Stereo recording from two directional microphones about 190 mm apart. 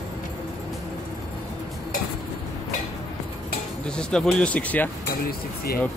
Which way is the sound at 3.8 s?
5° left (ahead or behind).